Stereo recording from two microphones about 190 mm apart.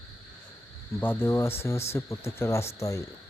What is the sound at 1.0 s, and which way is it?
Speech, 10° left (ahead or behind).